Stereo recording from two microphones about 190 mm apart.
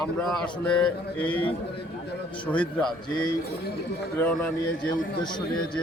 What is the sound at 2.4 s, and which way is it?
Speech, 5° left (ahead or behind).